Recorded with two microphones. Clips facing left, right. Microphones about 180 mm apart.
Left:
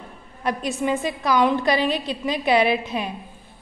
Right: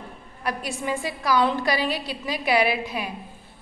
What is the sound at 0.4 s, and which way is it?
A woman's voice, 20° left (ahead or behind).